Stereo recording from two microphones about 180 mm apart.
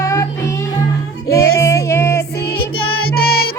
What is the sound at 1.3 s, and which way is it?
Music, 15° left (ahead or behind).